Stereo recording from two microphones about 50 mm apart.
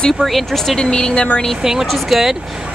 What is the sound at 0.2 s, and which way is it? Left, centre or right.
Speech, centre.